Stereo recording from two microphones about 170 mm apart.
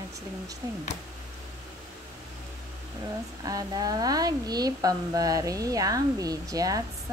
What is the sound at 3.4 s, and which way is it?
Speech, 20° right (ahead or behind).